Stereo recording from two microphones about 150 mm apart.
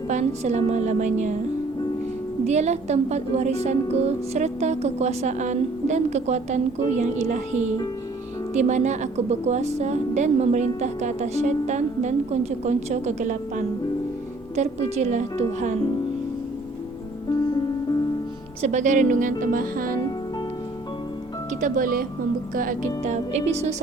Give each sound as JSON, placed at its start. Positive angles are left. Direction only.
{"t": 0.1, "sound": "a woman's voice", "side_deg": -50}
{"t": 2.5, "sound": "a woman's voice", "side_deg": -50}
{"t": 18.6, "sound": "speech", "side_deg": -55}
{"t": 21.6, "sound": "speech", "side_deg": -65}
{"t": 23.0, "sound": "a woman's voice", "side_deg": -50}